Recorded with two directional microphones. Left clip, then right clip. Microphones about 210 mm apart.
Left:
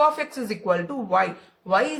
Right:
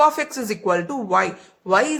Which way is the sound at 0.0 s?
55° right (ahead or behind).